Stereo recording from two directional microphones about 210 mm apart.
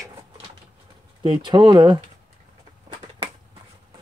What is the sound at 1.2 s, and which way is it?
Speech, 20° right (ahead or behind).